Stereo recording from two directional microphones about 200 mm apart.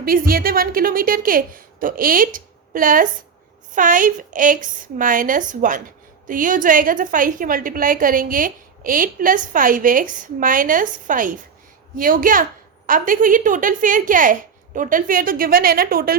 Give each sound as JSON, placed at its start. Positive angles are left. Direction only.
{"t": 0.0, "sound": "a woman's voice", "side_deg": -45}